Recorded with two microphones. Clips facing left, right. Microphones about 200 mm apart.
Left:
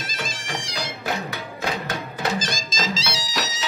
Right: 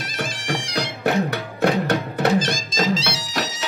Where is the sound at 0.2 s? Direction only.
60° right (ahead or behind).